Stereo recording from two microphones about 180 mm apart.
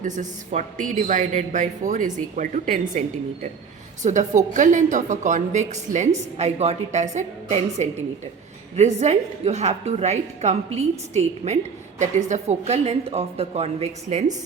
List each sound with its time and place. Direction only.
0.0 s speech: 45° right (ahead or behind)
4.0 s a woman's voice: 40° right (ahead or behind)